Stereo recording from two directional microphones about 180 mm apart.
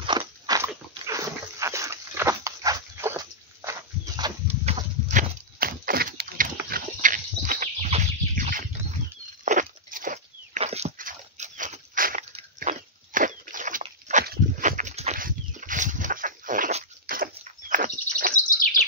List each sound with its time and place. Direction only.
0.2 s dog: 15° right (ahead or behind)
4.5 s goat: 40° right (ahead or behind)
5.6 s a sound: 55° right (ahead or behind)
9.4 s dog: 45° right (ahead or behind)
14.2 s a sound: 55° right (ahead or behind)
18.3 s bird: 50° left (ahead or behind)